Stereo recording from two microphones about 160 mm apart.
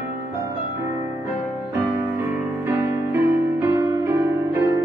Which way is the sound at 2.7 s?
15° right (ahead or behind).